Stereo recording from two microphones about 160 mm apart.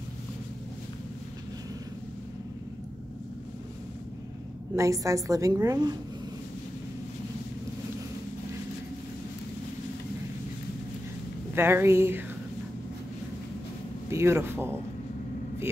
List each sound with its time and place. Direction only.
4.7 s a woman's voice: 20° right (ahead or behind)
11.5 s speech: 15° right (ahead or behind)
14.1 s speech: 15° right (ahead or behind)